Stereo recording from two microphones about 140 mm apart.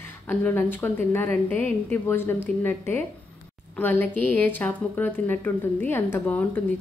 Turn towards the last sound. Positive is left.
turn(degrees=10)  # may be behind; listen again after turning